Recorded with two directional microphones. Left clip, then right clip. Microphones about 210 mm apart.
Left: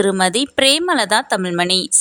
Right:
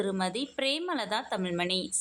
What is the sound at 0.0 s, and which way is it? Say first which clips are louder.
Speech: left 15 dB; 45° left (ahead or behind).